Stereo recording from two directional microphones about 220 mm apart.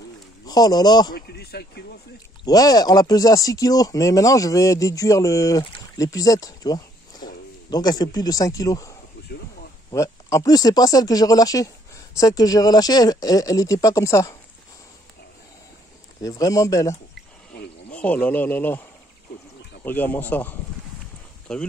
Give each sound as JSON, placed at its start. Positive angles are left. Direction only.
{"t": 0.5, "sound": "speech", "side_deg": 15}
{"t": 1.1, "sound": "speech", "side_deg": 45}
{"t": 2.4, "sound": "speech", "side_deg": 15}
{"t": 16.2, "sound": "speech", "side_deg": 15}
{"t": 17.9, "sound": "speech", "side_deg": 5}
{"t": 19.8, "sound": "speech", "side_deg": 10}